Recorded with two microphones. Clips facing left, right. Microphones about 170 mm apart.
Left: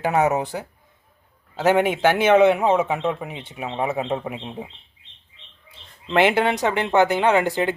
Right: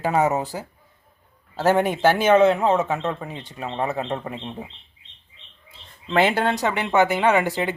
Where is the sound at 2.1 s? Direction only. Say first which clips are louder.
Left 2 dB; 20° left (ahead or behind).